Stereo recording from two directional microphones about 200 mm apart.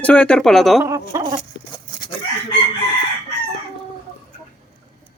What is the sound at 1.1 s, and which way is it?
Chicken, 15° right (ahead or behind).